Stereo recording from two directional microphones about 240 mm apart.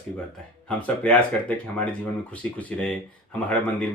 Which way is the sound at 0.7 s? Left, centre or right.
Centre.